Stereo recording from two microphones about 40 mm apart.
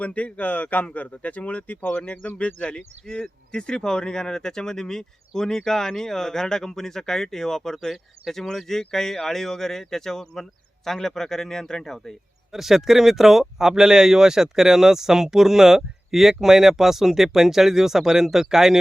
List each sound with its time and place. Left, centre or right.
0.0 s speech: left
1.9 s speech: left
12.5 s speech: centre